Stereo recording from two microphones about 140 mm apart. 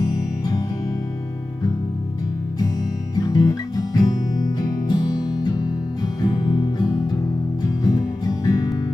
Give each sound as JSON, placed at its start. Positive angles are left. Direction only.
{"t": 3.2, "sound": "music", "side_deg": 25}
{"t": 6.2, "sound": "guitar", "side_deg": 30}
{"t": 7.6, "sound": "music", "side_deg": 25}